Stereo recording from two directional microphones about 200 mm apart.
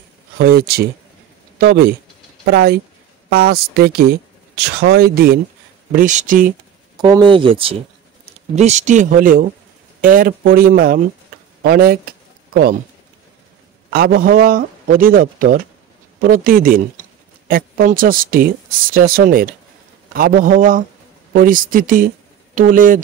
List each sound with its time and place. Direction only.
0.4 s speech: 50° right (ahead or behind)
7.0 s speech: 20° right (ahead or behind); by 12.1 s 50° right (ahead or behind)
13.9 s speech: 50° right (ahead or behind)